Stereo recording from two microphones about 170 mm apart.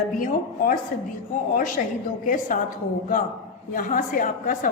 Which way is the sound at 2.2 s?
50° left (ahead or behind).